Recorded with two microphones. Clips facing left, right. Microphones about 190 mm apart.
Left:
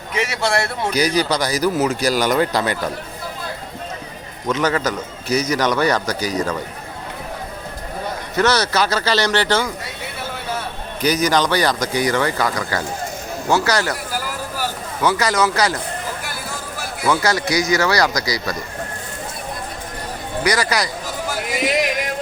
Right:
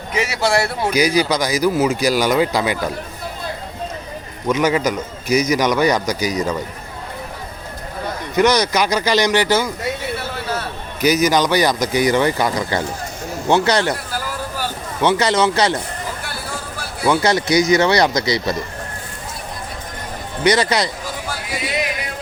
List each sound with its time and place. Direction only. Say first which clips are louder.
0.1 s speech: right 2 dB; 5° right (ahead or behind)
4.4 s speech: right 2 dB; 10° right (ahead or behind)
8.4 s speech: right 2 dB; 15° right (ahead or behind)
11.0 s speech: right 2 dB; 10° right (ahead or behind)
14.1 s vehicle: right 1 dB; 10° left (ahead or behind)
15.0 s speech: right 2 dB; 25° right (ahead or behind)
17.1 s speech: right 3 dB; 25° right (ahead or behind)
20.4 s speech: right 4 dB; 25° right (ahead or behind)